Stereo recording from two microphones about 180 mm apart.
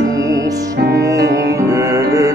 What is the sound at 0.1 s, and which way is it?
Music, 20° right (ahead or behind).